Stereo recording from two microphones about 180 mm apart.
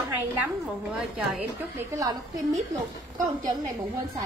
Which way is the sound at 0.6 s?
5° right (ahead or behind).